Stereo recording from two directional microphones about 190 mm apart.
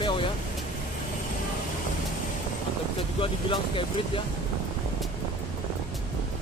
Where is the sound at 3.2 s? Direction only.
30° left (ahead or behind).